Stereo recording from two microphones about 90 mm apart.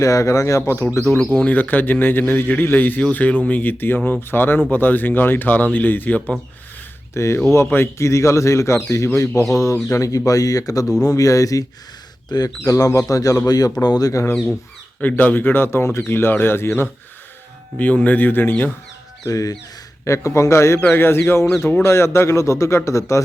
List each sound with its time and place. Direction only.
0.0 s a man's voice: 35° left (ahead or behind); by 6.3 s 15° left (ahead or behind)
7.1 s speech: 30° left (ahead or behind)
15.0 s a man's voice: 20° left (ahead or behind)
19.2 s a man's voice: 40° left (ahead or behind)